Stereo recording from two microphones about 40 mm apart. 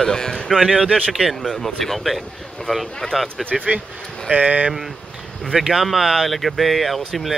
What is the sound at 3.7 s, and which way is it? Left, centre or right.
Speech, right.